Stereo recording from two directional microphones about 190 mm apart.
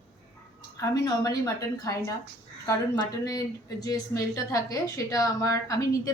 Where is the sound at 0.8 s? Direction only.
15° left (ahead or behind).